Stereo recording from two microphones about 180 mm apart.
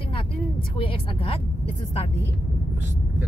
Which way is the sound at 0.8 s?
30° left (ahead or behind).